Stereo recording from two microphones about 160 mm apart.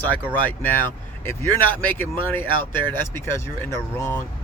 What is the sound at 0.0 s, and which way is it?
Speech, 10° left (ahead or behind).